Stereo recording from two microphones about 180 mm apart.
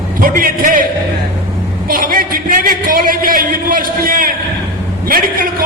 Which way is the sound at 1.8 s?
50° right (ahead or behind).